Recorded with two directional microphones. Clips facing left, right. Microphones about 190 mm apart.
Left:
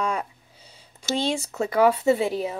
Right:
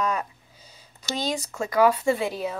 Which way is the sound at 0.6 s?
30° left (ahead or behind).